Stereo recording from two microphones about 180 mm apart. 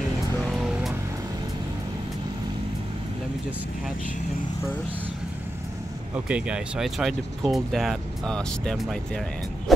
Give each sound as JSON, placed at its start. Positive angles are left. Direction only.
{"t": 0.5, "sound": "music", "side_deg": 0}
{"t": 6.1, "sound": "speech", "side_deg": -5}
{"t": 9.7, "sound": "a sound", "side_deg": 0}